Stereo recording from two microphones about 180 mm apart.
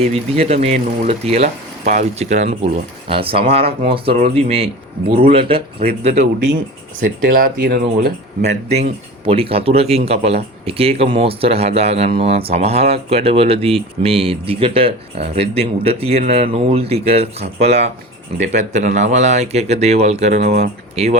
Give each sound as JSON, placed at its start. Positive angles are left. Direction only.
{"t": 0.0, "sound": "speech", "side_deg": -35}
{"t": 5.0, "sound": "speech", "side_deg": -55}
{"t": 5.3, "sound": "speech", "side_deg": -30}
{"t": 7.0, "sound": "speech", "side_deg": -55}
{"t": 8.4, "sound": "speech", "side_deg": -40}